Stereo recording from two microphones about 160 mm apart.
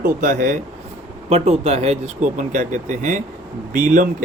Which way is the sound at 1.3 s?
40° right (ahead or behind).